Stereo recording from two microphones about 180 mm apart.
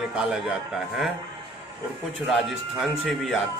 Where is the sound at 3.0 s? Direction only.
Centre (ahead or behind).